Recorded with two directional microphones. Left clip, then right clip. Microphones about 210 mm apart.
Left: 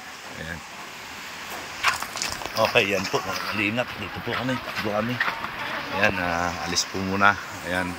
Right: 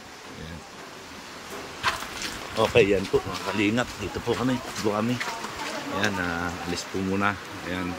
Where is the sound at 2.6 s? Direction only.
15° right (ahead or behind).